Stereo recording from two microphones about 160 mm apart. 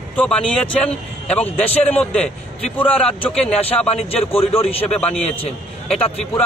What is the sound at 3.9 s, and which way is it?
Speech, 40° left (ahead or behind).